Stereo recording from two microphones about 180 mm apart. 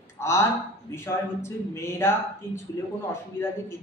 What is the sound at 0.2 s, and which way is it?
Speech, 15° left (ahead or behind).